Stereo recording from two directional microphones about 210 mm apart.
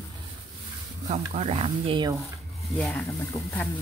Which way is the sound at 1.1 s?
30° right (ahead or behind).